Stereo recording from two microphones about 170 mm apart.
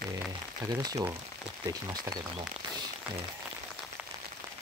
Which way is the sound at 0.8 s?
20° right (ahead or behind).